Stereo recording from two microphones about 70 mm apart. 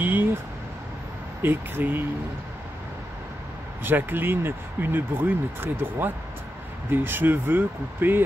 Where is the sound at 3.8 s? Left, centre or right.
Right.